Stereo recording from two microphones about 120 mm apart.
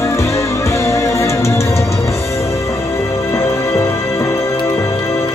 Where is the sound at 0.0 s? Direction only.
25° left (ahead or behind).